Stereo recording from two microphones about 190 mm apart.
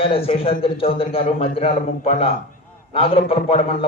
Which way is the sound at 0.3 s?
30° left (ahead or behind).